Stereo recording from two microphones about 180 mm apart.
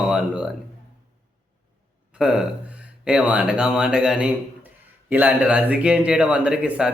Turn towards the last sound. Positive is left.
turn(degrees=-5)  # may be behind; listen again after turning